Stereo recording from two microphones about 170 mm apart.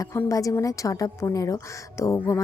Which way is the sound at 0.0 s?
15° left (ahead or behind).